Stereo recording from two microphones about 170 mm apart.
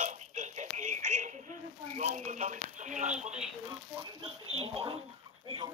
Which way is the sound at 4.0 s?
25° right (ahead or behind).